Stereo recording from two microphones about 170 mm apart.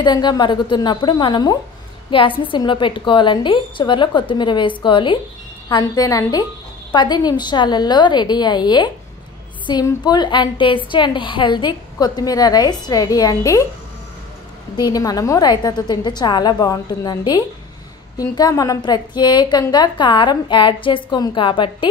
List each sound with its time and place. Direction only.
0.0 s a woman's voice: 25° left (ahead or behind)
14.8 s a woman's voice: 20° left (ahead or behind)